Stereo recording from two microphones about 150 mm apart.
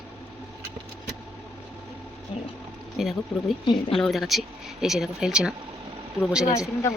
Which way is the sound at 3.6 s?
35° left (ahead or behind).